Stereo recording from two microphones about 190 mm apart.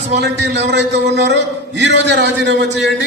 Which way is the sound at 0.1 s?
65° right (ahead or behind).